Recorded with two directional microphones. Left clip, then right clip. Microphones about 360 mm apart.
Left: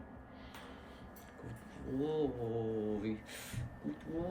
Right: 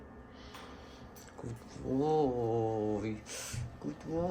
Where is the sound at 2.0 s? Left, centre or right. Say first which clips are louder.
Right 6 dB; right.